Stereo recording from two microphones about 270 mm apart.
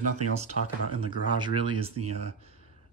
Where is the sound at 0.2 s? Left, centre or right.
Right.